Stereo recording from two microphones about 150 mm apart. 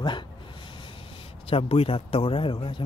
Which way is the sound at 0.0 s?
30° left (ahead or behind).